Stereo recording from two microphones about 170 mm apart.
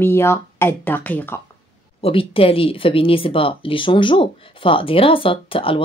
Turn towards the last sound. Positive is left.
turn(degrees=30)  # may be behind; listen again after turning